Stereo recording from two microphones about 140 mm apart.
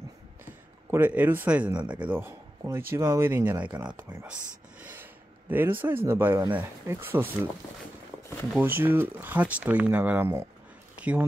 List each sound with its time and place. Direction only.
0.8 s speech: 15° right (ahead or behind)
8.5 s speech: 15° right (ahead or behind)